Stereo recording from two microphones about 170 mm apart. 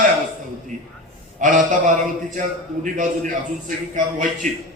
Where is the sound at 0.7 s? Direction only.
50° right (ahead or behind).